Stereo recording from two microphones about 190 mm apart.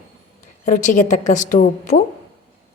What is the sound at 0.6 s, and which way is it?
A woman's voice, 40° left (ahead or behind).